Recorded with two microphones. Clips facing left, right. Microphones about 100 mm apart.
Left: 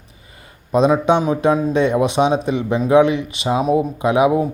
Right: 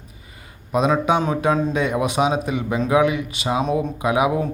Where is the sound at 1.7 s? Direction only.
25° left (ahead or behind).